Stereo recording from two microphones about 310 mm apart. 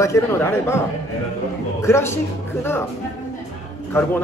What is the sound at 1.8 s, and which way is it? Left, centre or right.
Speech, centre.